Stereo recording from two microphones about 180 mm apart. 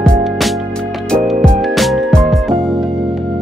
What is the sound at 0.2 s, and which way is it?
Music, centre (ahead or behind).